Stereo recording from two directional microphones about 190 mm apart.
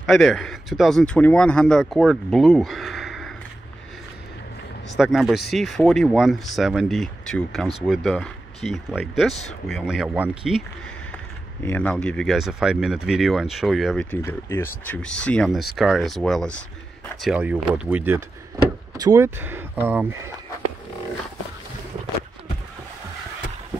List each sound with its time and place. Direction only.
0.0 s speech: centre (ahead or behind)
4.9 s speech: centre (ahead or behind)
11.6 s speech: 10° left (ahead or behind)
14.1 s speech: 10° left (ahead or behind); by 20.2 s 10° right (ahead or behind)